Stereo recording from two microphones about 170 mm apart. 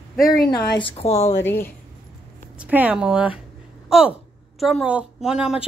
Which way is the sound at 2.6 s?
10° right (ahead or behind).